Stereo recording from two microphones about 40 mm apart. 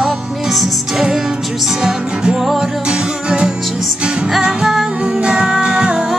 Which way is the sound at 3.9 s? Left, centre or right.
Right.